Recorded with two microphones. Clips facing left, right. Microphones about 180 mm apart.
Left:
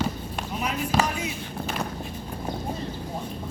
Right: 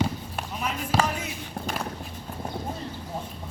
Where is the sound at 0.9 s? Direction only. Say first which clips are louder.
Even; 5° right (ahead or behind).